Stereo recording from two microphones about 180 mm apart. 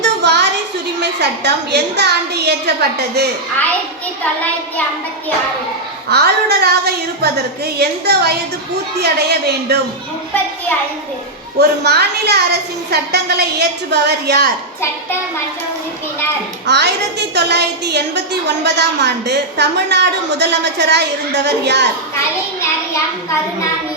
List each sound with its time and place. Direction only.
0.0 s a sound: 75° right (ahead or behind)
0.9 s a woman's voice: 70° right (ahead or behind)
6.1 s a woman's voice: 60° right (ahead or behind)
11.5 s a woman's voice: 65° right (ahead or behind)
16.6 s a woman's voice: 70° right (ahead or behind)